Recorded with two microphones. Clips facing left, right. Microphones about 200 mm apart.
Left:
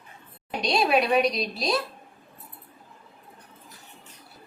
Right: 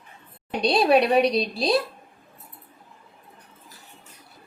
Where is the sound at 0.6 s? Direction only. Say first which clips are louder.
Right 4 dB; 30° right (ahead or behind).